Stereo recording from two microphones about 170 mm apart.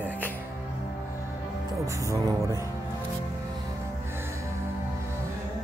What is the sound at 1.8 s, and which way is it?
Music, 20° right (ahead or behind).